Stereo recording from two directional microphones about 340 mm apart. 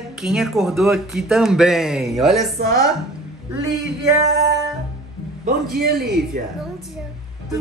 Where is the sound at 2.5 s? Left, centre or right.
Right.